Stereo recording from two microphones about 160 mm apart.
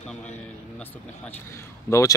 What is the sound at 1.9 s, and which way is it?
Speech, 20° left (ahead or behind).